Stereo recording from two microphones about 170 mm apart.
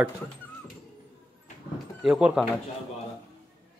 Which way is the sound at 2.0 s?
5° right (ahead or behind).